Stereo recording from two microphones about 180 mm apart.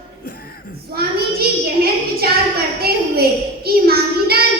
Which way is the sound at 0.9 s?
60° right (ahead or behind).